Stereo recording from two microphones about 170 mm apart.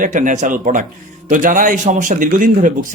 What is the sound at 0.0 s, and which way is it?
Speech, 50° right (ahead or behind).